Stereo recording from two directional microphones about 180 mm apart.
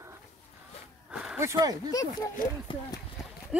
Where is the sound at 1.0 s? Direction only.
5° right (ahead or behind).